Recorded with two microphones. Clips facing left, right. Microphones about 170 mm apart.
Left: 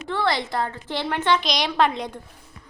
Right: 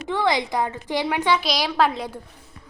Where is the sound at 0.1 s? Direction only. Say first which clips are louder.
Right 2 dB; 15° right (ahead or behind).